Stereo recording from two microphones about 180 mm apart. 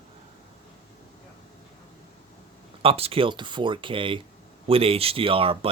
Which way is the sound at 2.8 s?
30° right (ahead or behind).